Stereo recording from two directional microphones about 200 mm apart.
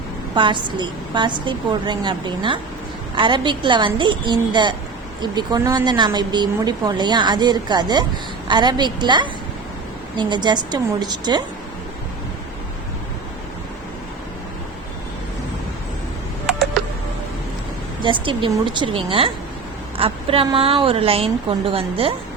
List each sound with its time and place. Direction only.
0.3 s speech: 25° right (ahead or behind)
18.0 s speech: 25° right (ahead or behind)